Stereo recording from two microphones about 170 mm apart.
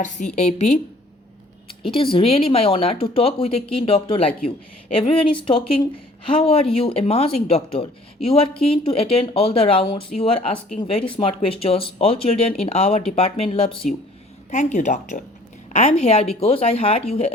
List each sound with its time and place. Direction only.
0.3 s speech: 40° left (ahead or behind)
1.8 s speech: 30° left (ahead or behind)
14.5 s speech: 45° left (ahead or behind)